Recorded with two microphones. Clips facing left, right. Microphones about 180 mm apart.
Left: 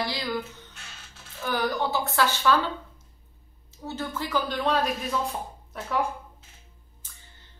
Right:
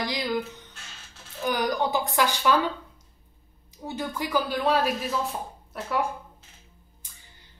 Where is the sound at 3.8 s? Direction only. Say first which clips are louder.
Right 1 dB; 15° right (ahead or behind).